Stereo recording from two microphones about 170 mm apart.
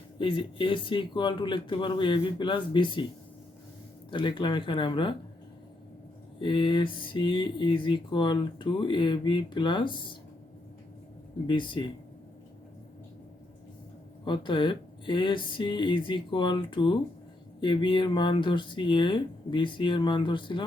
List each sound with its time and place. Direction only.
0.2 s speech: 30° left (ahead or behind)
4.1 s speech: 30° left (ahead or behind)
6.4 s speech: 30° left (ahead or behind)
11.4 s speech: 30° left (ahead or behind)
14.3 s speech: 30° left (ahead or behind)